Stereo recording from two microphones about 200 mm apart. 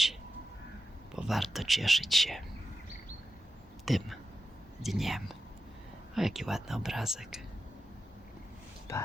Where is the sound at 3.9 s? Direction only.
Centre (ahead or behind).